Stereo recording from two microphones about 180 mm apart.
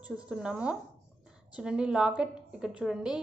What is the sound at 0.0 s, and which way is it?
A woman's voice, 5° right (ahead or behind).